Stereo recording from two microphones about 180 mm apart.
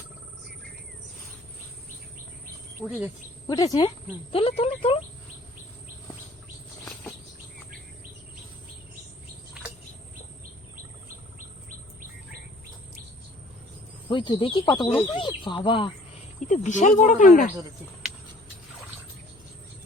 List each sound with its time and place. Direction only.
2.8 s speech: 10° right (ahead or behind)
3.4 s speech: 20° left (ahead or behind)
4.3 s speech: 30° left (ahead or behind)
14.1 s speech: 25° left (ahead or behind)
16.5 s speech: 45° left (ahead or behind)